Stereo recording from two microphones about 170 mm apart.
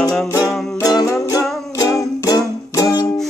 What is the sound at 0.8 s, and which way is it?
Music, 20° left (ahead or behind).